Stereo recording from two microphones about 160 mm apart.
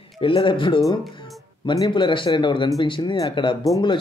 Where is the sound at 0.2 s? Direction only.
30° left (ahead or behind).